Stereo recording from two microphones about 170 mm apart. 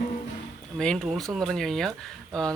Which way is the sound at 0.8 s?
5° left (ahead or behind).